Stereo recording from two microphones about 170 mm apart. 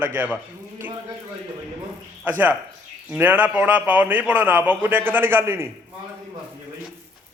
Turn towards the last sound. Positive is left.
turn(degrees=-15)  # may be behind; listen again after turning